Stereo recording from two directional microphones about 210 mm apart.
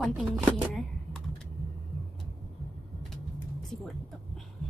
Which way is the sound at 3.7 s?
Centre (ahead or behind).